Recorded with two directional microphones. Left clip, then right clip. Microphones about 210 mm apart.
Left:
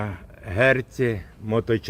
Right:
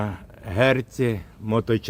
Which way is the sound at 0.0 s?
15° right (ahead or behind).